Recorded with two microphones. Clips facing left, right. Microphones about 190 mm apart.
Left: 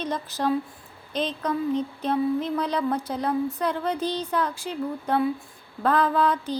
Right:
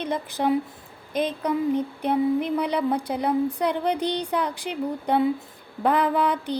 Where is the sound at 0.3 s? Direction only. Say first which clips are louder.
Right 2 dB; 60° right (ahead or behind).